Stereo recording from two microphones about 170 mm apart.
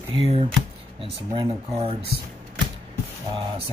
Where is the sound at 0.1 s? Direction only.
35° right (ahead or behind).